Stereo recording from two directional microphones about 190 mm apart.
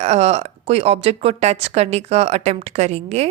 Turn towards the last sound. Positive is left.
turn(degrees=-35)  # may be behind; listen again after turning